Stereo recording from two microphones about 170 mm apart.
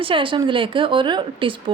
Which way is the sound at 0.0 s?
30° right (ahead or behind).